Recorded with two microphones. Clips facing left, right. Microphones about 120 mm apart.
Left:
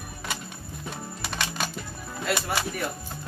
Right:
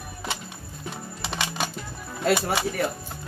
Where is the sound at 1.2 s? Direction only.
20° right (ahead or behind).